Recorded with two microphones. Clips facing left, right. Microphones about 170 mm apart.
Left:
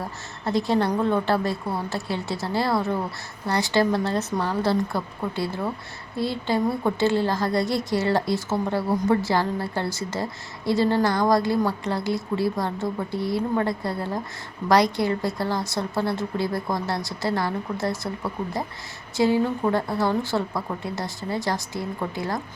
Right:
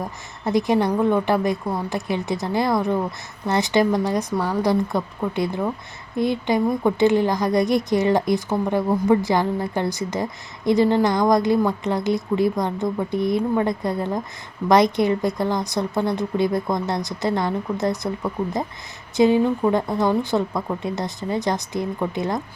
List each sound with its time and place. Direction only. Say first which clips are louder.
0.0 s a woman's voice: right 3 dB; 15° right (ahead or behind)